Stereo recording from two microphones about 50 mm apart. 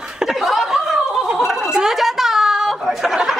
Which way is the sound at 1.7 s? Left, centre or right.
Centre.